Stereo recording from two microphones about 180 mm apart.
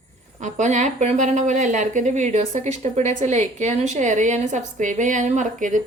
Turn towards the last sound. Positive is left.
turn(degrees=-45)  # may be behind; listen again after turning